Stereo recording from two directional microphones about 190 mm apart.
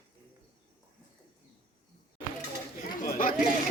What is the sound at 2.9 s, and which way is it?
Speech, 45° left (ahead or behind).